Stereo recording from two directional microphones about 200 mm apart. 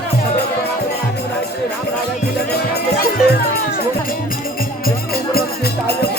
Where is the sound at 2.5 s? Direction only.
50° left (ahead or behind).